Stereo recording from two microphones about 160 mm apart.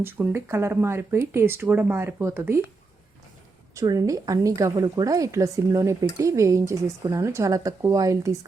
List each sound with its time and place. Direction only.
0.0 s speech: 15° right (ahead or behind)
3.8 s a woman's voice: 20° right (ahead or behind)